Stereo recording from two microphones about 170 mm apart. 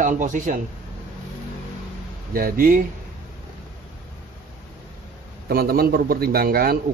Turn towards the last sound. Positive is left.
turn(degrees=-60)  # may be behind; listen again after turning